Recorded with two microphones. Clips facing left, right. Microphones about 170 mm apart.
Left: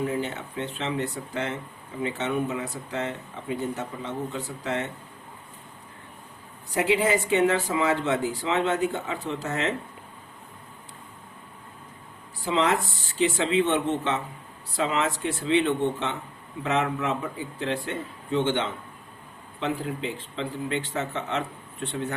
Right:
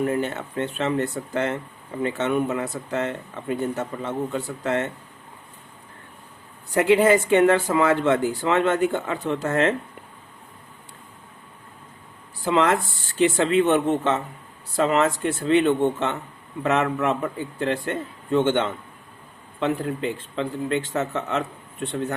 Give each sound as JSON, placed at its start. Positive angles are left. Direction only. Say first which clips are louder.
{"t": 0.0, "sound": "speech", "louder": "right 4 dB", "side_deg": -55}
{"t": 6.7, "sound": "speech", "louder": "right 6 dB", "side_deg": -60}
{"t": 12.5, "sound": "speech", "louder": "right 4 dB", "side_deg": -55}